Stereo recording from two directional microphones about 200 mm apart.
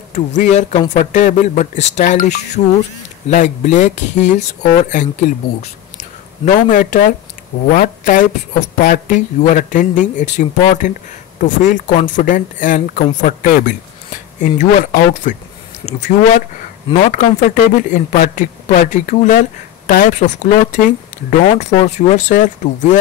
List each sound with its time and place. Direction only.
0.4 s a woman's voice: 35° left (ahead or behind)
6.4 s a woman's voice: 40° left (ahead or behind)